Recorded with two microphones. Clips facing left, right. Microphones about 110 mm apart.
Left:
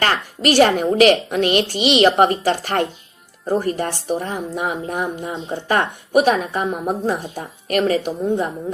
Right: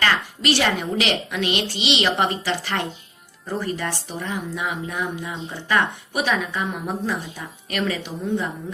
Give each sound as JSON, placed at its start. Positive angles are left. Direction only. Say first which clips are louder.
{"t": 0.0, "sound": "a woman's voice", "louder": "left 3 dB", "side_deg": 45}